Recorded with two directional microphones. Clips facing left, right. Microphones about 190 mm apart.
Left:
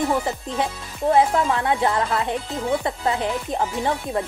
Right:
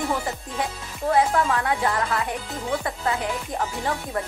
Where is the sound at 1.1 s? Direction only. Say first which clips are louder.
Left 2 dB; 25° left (ahead or behind).